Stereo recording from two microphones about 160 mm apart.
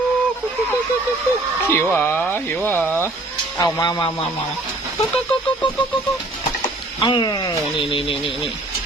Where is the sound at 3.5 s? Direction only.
25° left (ahead or behind).